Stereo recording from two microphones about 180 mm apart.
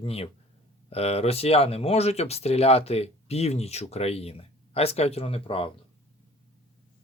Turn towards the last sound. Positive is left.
turn(degrees=30)  # may be behind; listen again after turning